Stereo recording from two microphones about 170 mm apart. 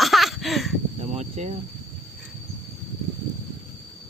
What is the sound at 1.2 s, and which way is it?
Speech, 40° right (ahead or behind).